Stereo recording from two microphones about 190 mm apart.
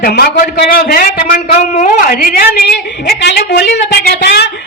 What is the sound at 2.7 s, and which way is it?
A woman's voice, 65° left (ahead or behind).